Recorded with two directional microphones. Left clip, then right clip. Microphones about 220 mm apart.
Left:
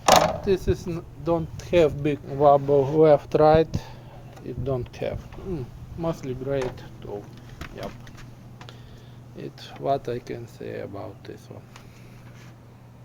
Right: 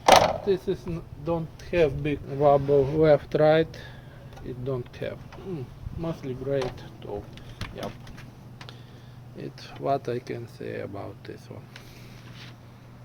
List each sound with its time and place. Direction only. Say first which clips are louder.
0.1 s speech: even; 25° left (ahead or behind)
2.4 s speech: left 2 dB; 5° left (ahead or behind)
9.4 s speech: left 1 dB; 10° left (ahead or behind)